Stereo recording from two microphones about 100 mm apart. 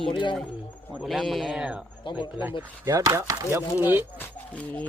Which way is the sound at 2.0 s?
55° left (ahead or behind).